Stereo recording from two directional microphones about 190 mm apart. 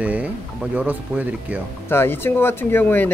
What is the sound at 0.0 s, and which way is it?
Speech, 10° right (ahead or behind).